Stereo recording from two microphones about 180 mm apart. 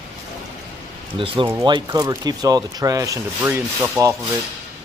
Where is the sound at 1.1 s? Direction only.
30° right (ahead or behind).